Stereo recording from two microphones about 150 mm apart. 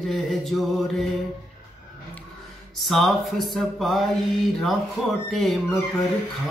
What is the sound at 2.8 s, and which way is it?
Mantra, centre (ahead or behind).